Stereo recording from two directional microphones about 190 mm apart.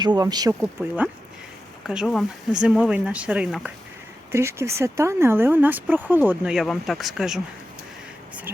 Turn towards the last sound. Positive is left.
turn(degrees=0)  # may be behind; listen again after turning